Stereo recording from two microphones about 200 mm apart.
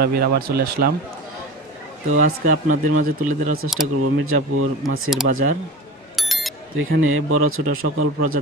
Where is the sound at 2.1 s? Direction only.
40° right (ahead or behind).